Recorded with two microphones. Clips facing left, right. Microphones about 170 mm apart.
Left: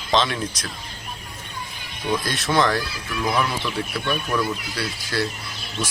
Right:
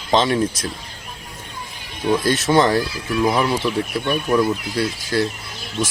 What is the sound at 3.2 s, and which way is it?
Speech, 30° right (ahead or behind).